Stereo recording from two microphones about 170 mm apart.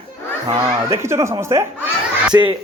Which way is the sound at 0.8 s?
15° right (ahead or behind).